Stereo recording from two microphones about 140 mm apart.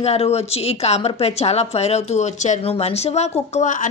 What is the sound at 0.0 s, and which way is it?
A woman's voice, 50° left (ahead or behind).